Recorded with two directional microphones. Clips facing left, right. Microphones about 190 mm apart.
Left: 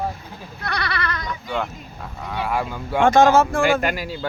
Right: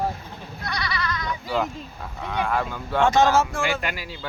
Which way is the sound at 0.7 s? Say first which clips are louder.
Left 3 dB; 60° left (ahead or behind).